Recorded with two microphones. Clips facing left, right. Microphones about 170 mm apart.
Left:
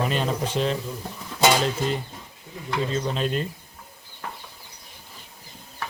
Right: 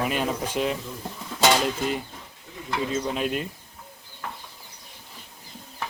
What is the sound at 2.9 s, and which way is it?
Speech, 5° right (ahead or behind).